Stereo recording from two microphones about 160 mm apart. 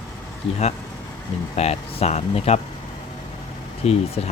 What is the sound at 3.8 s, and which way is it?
Speech, 40° left (ahead or behind).